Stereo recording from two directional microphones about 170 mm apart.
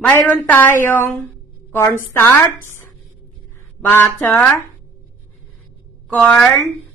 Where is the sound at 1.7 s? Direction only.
15° left (ahead or behind).